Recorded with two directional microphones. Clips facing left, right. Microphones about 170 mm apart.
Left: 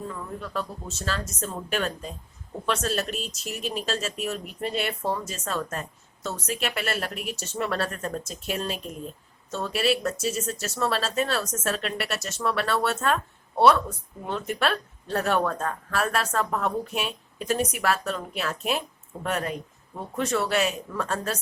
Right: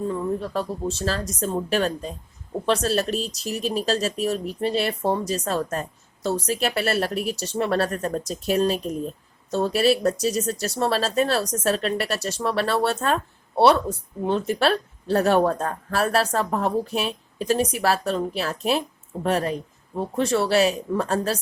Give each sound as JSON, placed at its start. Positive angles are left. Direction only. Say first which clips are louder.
{"t": 0.1, "sound": "speech", "louder": "right 8 dB", "side_deg": -35}